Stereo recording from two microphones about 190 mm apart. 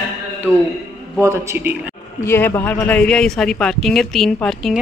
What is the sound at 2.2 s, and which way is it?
Speech, 10° left (ahead or behind).